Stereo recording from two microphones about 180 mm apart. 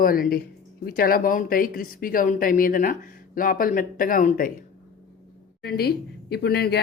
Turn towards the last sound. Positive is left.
turn(degrees=65)  # may be behind; listen again after turning